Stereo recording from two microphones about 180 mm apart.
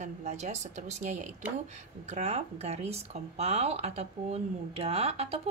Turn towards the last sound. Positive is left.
turn(degrees=-35)  # may be behind; listen again after turning